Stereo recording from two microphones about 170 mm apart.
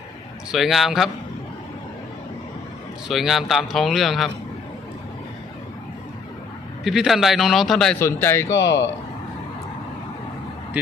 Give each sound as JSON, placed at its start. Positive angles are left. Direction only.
{"t": 0.5, "sound": "speech", "side_deg": 0}
{"t": 3.1, "sound": "speech", "side_deg": 0}
{"t": 6.8, "sound": "speech", "side_deg": 0}
{"t": 7.9, "sound": "speech", "side_deg": 15}
{"t": 8.4, "sound": "speech", "side_deg": 90}